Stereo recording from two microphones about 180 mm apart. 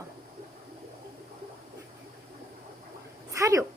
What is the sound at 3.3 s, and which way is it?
Speech, 15° right (ahead or behind).